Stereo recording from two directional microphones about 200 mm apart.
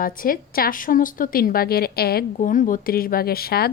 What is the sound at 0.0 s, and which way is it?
A woman's voice, 45° left (ahead or behind).